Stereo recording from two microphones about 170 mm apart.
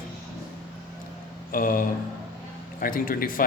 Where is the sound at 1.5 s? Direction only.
55° left (ahead or behind).